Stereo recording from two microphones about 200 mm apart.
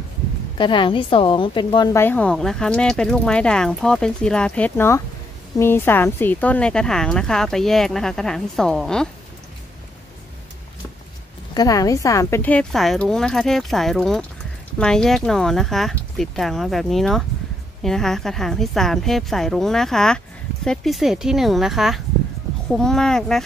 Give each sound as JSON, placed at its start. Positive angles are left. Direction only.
{"t": 0.6, "sound": "a woman's voice", "side_deg": 25}
{"t": 11.5, "sound": "speech", "side_deg": 20}